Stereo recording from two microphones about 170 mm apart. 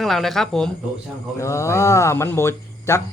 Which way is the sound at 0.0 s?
Centre (ahead or behind).